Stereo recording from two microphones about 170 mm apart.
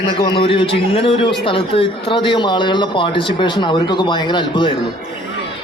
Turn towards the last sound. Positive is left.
turn(degrees=30)  # may be behind; listen again after turning